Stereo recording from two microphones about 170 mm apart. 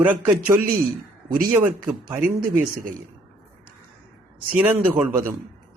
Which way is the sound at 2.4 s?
55° right (ahead or behind).